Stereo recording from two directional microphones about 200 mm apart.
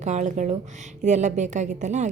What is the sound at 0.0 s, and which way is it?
A woman's voice, 35° right (ahead or behind).